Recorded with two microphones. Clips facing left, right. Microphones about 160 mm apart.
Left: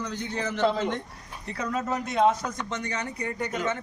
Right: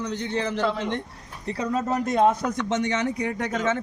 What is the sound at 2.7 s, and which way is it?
Speech, 90° right.